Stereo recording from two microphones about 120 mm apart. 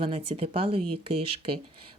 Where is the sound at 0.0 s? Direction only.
50° right (ahead or behind).